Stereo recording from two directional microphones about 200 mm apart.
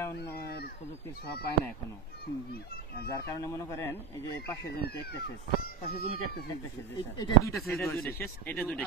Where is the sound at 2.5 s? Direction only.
50° left (ahead or behind).